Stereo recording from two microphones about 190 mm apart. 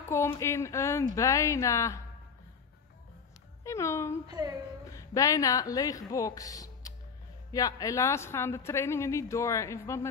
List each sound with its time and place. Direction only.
0.1 s speech: 15° left (ahead or behind)
3.6 s speech: 15° left (ahead or behind)